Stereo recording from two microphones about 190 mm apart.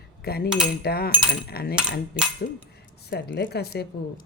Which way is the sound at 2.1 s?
5° right (ahead or behind).